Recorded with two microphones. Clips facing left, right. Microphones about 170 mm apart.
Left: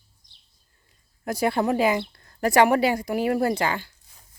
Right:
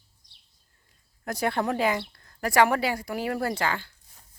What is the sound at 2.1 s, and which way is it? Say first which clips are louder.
Speech: left 4 dB; 25° left (ahead or behind).